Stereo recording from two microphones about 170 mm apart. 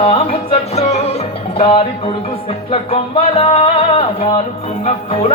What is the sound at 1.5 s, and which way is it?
Music, 30° left (ahead or behind).